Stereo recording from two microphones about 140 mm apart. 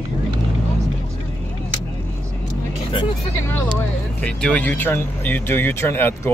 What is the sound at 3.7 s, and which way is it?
Speech, 5° left (ahead or behind).